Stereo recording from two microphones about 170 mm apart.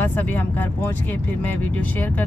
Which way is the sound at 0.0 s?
10° left (ahead or behind).